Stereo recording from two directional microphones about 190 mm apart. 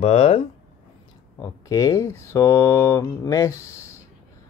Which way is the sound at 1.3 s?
15° left (ahead or behind).